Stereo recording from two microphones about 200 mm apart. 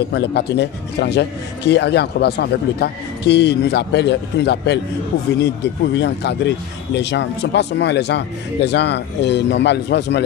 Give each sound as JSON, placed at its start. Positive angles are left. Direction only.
{"t": 0.1, "sound": "speech", "side_deg": 55}
{"t": 5.9, "sound": "speech", "side_deg": 60}